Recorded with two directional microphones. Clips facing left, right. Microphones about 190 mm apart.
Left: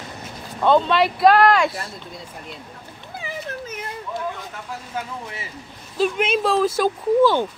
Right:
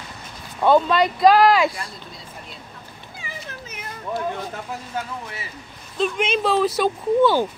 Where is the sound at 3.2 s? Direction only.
60° left (ahead or behind).